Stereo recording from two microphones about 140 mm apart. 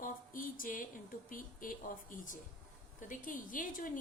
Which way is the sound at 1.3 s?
80° left.